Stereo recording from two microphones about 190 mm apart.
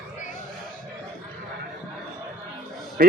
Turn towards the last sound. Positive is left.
turn(degrees=-50)  # may be behind; listen again after turning